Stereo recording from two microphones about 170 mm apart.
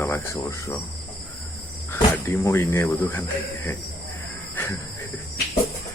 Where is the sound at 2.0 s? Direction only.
15° left (ahead or behind).